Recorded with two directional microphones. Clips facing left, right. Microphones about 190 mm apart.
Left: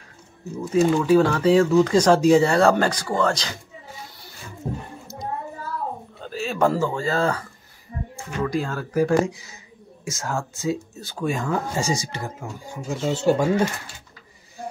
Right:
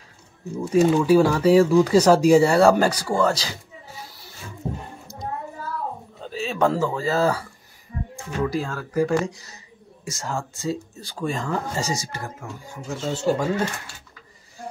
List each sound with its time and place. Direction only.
0.8 s speech: 5° right (ahead or behind)
6.2 s speech: centre (ahead or behind)
8.7 s speech: 15° left (ahead or behind)
10.0 s speech: centre (ahead or behind)